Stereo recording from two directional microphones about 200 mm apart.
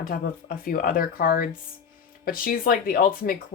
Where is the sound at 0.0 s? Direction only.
50° left (ahead or behind).